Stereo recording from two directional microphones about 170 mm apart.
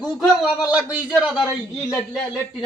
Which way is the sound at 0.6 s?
5° right (ahead or behind).